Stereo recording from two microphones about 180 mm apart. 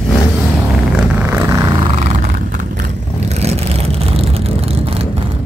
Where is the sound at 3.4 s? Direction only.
35° right (ahead or behind).